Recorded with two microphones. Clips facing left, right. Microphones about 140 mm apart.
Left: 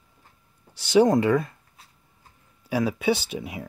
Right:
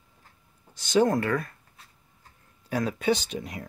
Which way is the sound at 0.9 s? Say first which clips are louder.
Left 4 dB; 15° left (ahead or behind).